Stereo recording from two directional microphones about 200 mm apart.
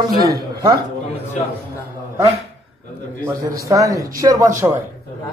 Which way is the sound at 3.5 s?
15° right (ahead or behind).